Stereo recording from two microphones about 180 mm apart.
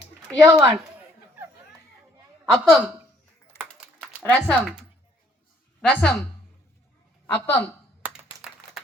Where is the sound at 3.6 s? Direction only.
Centre (ahead or behind).